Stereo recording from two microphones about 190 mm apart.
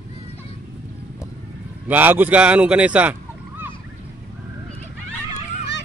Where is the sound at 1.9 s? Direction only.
10° right (ahead or behind).